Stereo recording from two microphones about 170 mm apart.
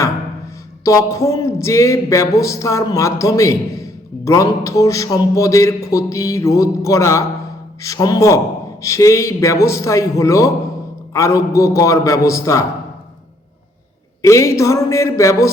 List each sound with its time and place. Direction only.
0.9 s a man's voice: 20° left (ahead or behind)
14.2 s a man's voice: 20° left (ahead or behind)